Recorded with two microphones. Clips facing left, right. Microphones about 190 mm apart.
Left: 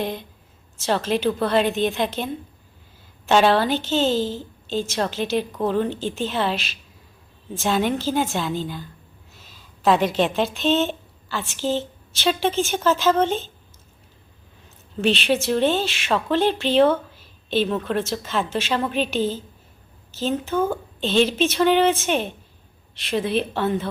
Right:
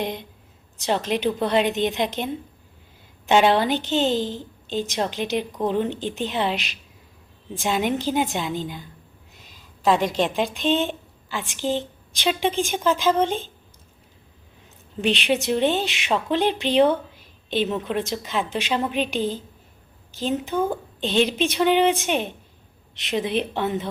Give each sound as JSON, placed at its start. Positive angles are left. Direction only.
{"t": 0.0, "sound": "a woman's voice", "side_deg": -20}
{"t": 15.0, "sound": "a woman's voice", "side_deg": -15}